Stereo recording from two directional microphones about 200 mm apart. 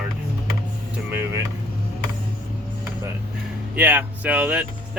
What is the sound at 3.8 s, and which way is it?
Speech, 10° right (ahead or behind).